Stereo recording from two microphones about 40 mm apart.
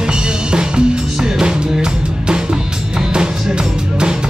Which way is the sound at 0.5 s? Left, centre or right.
Right.